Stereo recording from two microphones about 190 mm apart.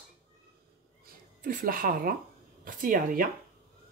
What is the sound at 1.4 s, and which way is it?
A woman's voice, 45° right (ahead or behind).